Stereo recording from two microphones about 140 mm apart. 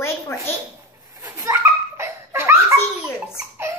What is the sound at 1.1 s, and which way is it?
Laughter, 20° right (ahead or behind).